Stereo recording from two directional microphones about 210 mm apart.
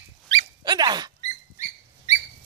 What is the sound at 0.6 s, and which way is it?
Speech, 20° right (ahead or behind).